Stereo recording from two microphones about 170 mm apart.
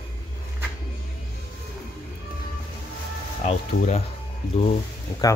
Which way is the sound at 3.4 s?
45° left (ahead or behind).